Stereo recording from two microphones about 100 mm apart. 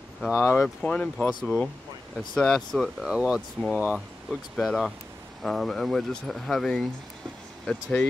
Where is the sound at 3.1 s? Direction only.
10° right (ahead or behind).